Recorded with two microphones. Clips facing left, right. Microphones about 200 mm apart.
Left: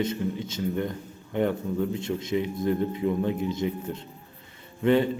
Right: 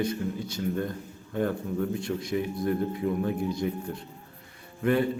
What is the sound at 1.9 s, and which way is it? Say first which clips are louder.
A man's voice: left 2 dB; 20° left (ahead or behind).